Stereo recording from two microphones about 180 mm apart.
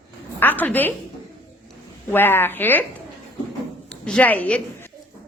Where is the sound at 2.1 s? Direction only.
10° left (ahead or behind).